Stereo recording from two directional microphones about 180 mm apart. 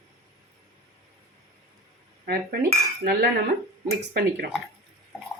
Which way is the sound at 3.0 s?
55° right (ahead or behind).